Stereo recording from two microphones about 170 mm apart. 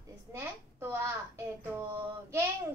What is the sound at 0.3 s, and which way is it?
A woman's voice, 15° right (ahead or behind).